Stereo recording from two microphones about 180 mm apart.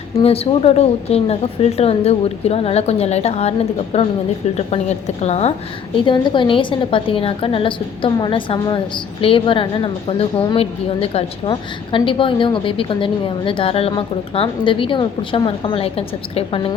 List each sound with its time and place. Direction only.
0.2 s a woman's voice: 35° left (ahead or behind)
6.1 s a woman's voice: 25° left (ahead or behind)